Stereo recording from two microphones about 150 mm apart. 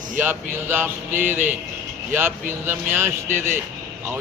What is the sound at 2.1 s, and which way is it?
Speech, 15° right (ahead or behind).